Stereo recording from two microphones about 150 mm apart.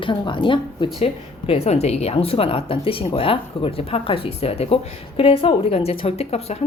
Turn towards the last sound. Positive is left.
turn(degrees=45)  # may be behind; listen again after turning